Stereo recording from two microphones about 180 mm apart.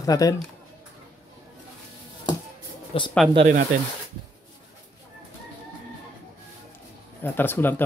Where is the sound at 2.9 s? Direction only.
30° left (ahead or behind).